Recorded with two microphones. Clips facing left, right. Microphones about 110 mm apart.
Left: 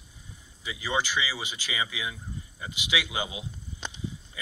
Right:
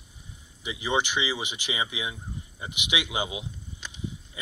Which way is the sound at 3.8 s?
30° left (ahead or behind).